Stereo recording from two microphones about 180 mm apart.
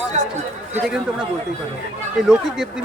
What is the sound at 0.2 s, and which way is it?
Speech, 40° right (ahead or behind).